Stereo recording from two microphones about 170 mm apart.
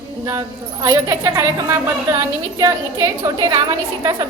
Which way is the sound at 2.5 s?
20° right (ahead or behind).